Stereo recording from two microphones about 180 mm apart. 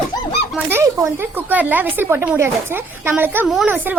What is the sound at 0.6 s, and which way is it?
A woman's voice, 15° right (ahead or behind).